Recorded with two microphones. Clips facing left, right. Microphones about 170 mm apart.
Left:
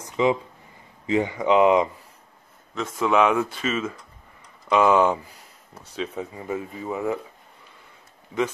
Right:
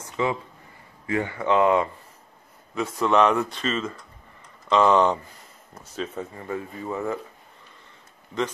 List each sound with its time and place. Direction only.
0.0 s a sound: 15° left (ahead or behind)
1.0 s speech: 15° left (ahead or behind)
3.0 s speech: 5° left (ahead or behind)